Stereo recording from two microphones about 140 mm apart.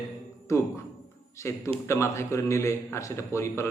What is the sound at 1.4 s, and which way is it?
A man's voice, 20° left (ahead or behind).